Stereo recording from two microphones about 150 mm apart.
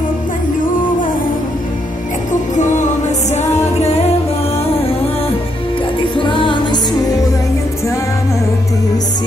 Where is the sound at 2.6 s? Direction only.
55° left (ahead or behind).